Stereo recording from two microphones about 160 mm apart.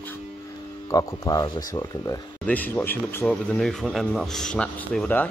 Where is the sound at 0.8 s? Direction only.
20° left (ahead or behind).